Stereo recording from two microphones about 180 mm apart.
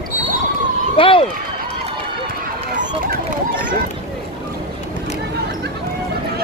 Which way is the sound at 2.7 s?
50° right (ahead or behind).